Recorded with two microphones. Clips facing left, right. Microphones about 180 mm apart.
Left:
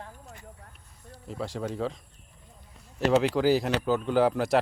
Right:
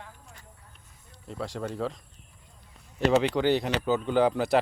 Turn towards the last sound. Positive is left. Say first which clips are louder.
# even
turn(degrees=0)  # may be behind; listen again after turning